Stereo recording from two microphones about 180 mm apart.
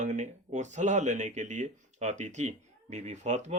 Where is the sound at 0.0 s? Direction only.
40° right (ahead or behind).